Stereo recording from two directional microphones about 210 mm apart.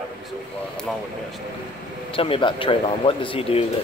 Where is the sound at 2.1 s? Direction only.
25° left (ahead or behind).